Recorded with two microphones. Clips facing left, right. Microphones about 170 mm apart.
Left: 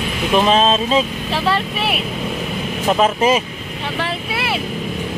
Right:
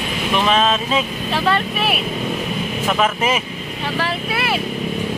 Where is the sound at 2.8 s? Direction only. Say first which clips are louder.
Left 4 dB; 30° left (ahead or behind).